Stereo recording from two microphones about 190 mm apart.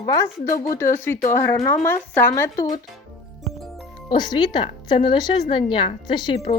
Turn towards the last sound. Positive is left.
turn(degrees=25)  # may be behind; listen again after turning